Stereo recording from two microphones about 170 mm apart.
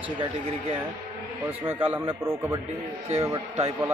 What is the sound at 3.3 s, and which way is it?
Speech, 40° right (ahead or behind).